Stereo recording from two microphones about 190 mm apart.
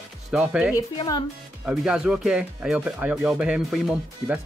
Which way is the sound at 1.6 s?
5° right (ahead or behind).